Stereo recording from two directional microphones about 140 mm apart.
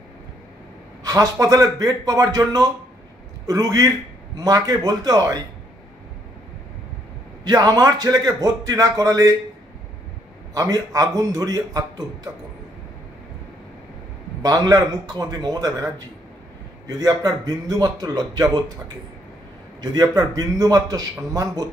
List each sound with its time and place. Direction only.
1.0 s a man's voice: 25° right (ahead or behind)
7.4 s a man's voice: 30° right (ahead or behind)
10.5 s a man's voice: 25° right (ahead or behind)
14.4 s a man's voice: 30° right (ahead or behind)
19.8 s a man's voice: 30° right (ahead or behind)